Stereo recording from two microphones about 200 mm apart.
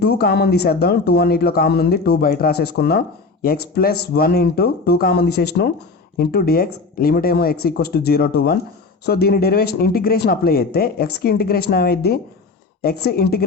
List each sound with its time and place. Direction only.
0.0 s speech: 55° left (ahead or behind)